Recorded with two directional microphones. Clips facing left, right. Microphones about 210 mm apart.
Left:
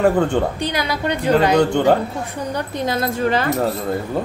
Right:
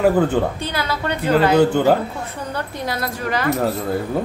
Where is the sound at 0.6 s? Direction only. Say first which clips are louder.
Left 2 dB; 15° left (ahead or behind).